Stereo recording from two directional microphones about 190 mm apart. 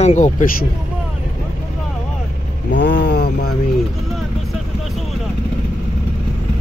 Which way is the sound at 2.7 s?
70° left (ahead or behind).